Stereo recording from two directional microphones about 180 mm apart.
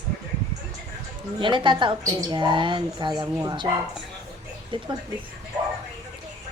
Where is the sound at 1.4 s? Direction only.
25° right (ahead or behind).